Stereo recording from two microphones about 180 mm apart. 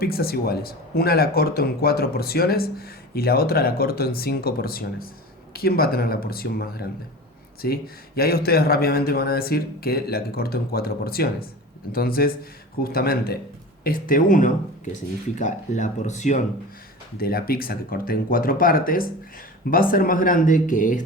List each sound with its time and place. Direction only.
0.0 s speech: 55° left (ahead or behind); by 16.4 s 40° left (ahead or behind)
17.2 s speech: 55° left (ahead or behind)